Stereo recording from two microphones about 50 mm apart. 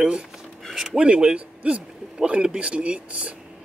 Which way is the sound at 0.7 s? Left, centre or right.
Centre.